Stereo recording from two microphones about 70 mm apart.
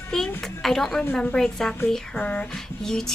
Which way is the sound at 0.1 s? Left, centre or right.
Centre.